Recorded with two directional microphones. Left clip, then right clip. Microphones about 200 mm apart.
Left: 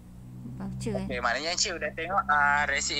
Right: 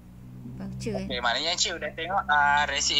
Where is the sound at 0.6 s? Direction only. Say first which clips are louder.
Right 1 dB; 15° left (ahead or behind).